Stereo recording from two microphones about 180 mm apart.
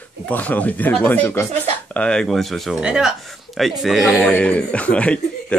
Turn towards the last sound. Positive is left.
turn(degrees=5)  # may be behind; listen again after turning